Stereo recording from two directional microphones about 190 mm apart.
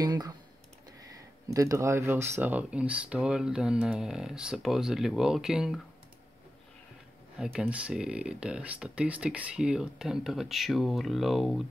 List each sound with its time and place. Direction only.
0.0 s typing: 20° right (ahead or behind)
1.5 s speech: 15° right (ahead or behind)
7.3 s speech: centre (ahead or behind)